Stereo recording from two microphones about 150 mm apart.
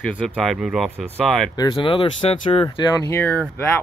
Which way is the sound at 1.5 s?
30° left (ahead or behind).